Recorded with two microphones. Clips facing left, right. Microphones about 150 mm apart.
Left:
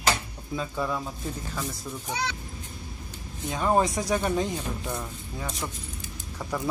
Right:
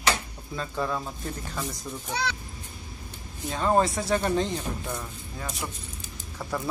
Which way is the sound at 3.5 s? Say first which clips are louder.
Even; 10° left (ahead or behind).